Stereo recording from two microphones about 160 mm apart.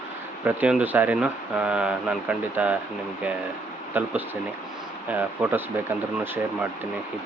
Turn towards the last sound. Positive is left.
turn(degrees=-15)  # may be behind; listen again after turning